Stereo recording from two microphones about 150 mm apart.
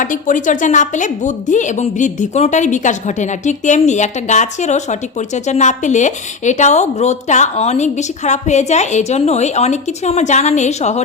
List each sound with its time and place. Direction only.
0.0 s a woman's voice: 60° left (ahead or behind)